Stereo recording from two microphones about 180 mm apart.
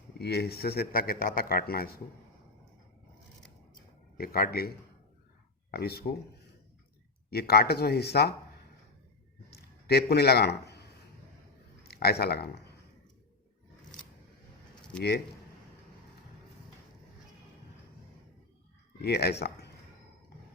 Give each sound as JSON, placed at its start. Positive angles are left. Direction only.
{"t": 0.2, "sound": "a man's voice", "side_deg": 60}
{"t": 4.2, "sound": "a man's voice", "side_deg": 55}
{"t": 5.7, "sound": "a man's voice", "side_deg": 60}
{"t": 7.3, "sound": "a man's voice", "side_deg": 60}
{"t": 9.6, "sound": "a sound", "side_deg": 65}
{"t": 11.9, "sound": "speech", "side_deg": 60}
{"t": 19.0, "sound": "speech", "side_deg": 65}